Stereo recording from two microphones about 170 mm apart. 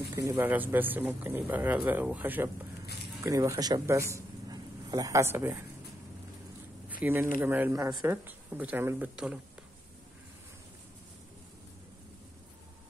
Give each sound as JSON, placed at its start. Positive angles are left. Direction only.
{"t": 0.1, "sound": "a man's voice", "side_deg": -15}
{"t": 7.0, "sound": "speech", "side_deg": -10}